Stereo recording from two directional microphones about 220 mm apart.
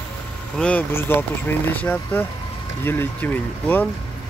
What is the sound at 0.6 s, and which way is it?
Speech, 5° left (ahead or behind).